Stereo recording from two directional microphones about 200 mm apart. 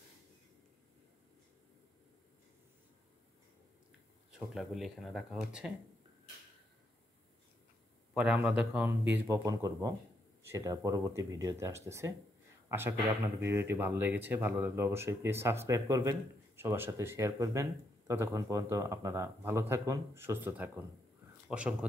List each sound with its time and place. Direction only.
4.3 s speech: centre (ahead or behind)
8.1 s speech: 5° right (ahead or behind)